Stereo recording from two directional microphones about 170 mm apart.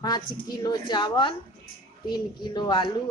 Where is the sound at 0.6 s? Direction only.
25° left (ahead or behind).